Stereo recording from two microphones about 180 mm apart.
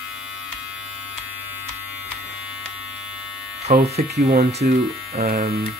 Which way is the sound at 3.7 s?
50° right (ahead or behind).